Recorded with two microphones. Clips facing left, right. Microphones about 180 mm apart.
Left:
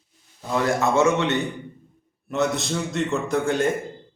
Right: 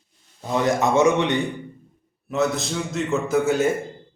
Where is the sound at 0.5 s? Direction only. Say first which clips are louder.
Right 1 dB; 20° right (ahead or behind).